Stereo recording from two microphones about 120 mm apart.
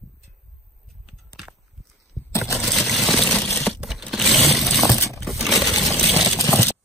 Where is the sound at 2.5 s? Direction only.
Centre (ahead or behind).